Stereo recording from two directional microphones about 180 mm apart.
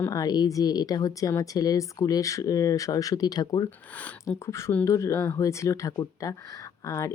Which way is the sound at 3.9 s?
10° left (ahead or behind).